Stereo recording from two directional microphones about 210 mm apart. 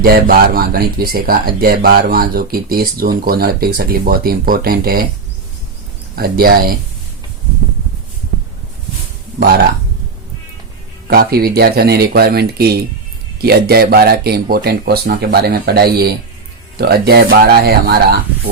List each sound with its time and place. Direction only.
0.0 s speech: 45° right (ahead or behind)
6.1 s speech: 45° right (ahead or behind)
11.1 s speech: 45° right (ahead or behind)